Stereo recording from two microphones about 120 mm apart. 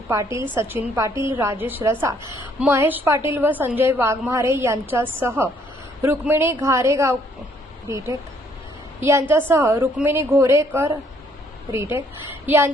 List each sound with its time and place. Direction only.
0.2 s a woman's voice: 25° right (ahead or behind)